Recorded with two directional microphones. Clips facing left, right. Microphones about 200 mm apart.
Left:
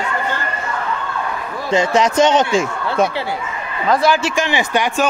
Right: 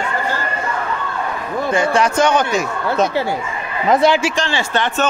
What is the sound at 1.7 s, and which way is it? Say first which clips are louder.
Speech: left 1 dB; 20° left (ahead or behind).